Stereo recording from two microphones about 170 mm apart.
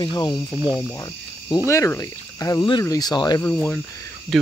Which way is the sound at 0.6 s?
5° right (ahead or behind).